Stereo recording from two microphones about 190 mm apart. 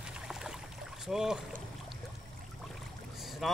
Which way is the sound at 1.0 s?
5° right (ahead or behind).